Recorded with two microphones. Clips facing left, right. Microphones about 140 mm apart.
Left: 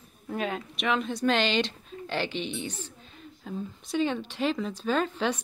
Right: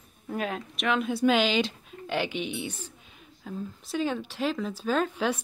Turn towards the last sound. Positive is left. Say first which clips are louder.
# even
turn(degrees=-10)  # may be behind; listen again after turning